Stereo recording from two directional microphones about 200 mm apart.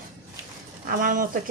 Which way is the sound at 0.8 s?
45° right (ahead or behind).